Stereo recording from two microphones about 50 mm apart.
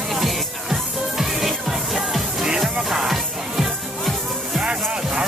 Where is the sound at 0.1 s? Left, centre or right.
Centre.